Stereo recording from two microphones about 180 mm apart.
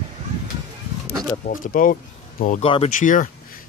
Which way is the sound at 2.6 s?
35° left (ahead or behind).